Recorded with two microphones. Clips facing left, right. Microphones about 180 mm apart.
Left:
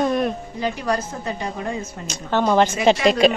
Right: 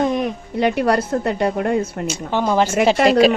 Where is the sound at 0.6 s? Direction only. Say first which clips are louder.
Right 8 dB; 65° right (ahead or behind).